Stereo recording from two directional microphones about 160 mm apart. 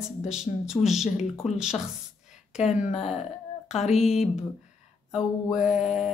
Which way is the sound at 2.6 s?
45° left (ahead or behind).